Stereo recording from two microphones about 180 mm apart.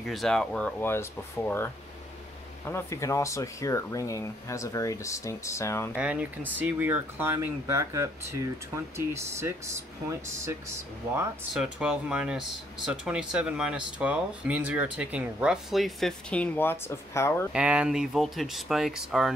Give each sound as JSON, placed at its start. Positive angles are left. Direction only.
{"t": 0.0, "sound": "speech", "side_deg": 0}
{"t": 5.9, "sound": "speech", "side_deg": -10}
{"t": 11.5, "sound": "speech", "side_deg": -5}
{"t": 17.5, "sound": "speech", "side_deg": -5}